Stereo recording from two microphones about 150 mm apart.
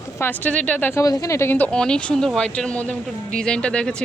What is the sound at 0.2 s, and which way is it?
Speech, 10° left (ahead or behind).